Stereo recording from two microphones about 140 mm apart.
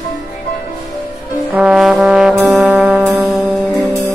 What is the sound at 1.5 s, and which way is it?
Trombone, 5° right (ahead or behind).